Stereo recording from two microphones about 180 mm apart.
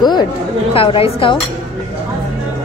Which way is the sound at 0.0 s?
25° left (ahead or behind).